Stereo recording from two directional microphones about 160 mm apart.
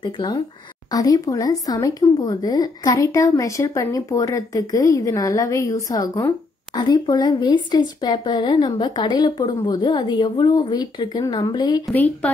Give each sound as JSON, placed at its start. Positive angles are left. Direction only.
{"t": 0.0, "sound": "speech", "side_deg": 30}
{"t": 11.9, "sound": "speech", "side_deg": 10}